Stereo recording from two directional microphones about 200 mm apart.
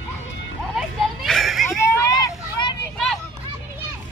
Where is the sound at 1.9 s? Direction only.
20° left (ahead or behind).